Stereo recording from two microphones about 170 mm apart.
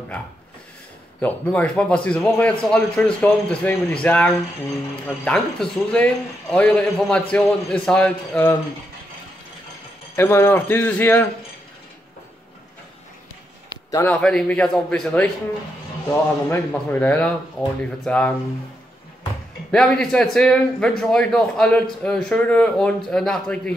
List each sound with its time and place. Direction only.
1.2 s a man's voice: 10° left (ahead or behind)
10.1 s a man's voice: 15° left (ahead or behind)
13.8 s a man's voice: 20° left (ahead or behind)
14.1 s a man's voice: 5° left (ahead or behind)
19.7 s a man's voice: 5° left (ahead or behind)